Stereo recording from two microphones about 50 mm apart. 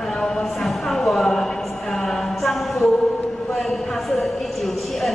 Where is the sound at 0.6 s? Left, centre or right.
Centre.